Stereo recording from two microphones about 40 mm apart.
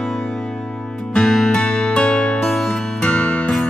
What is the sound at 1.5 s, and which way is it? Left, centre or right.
Music, left.